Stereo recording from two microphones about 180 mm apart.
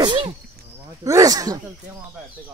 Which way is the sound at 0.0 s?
25° right (ahead or behind).